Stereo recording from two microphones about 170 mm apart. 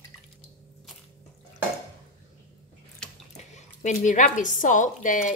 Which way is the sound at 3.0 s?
5° left (ahead or behind).